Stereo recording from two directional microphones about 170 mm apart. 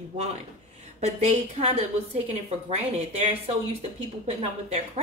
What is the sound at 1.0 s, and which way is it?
A woman's voice, 40° right (ahead or behind).